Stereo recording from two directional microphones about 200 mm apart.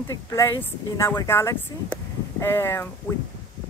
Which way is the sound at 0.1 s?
15° left (ahead or behind).